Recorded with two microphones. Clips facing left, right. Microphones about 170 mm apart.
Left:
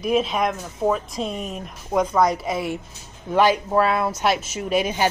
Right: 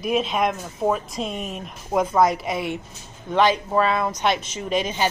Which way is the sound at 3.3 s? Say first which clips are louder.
Left 1 dB; 10° left (ahead or behind).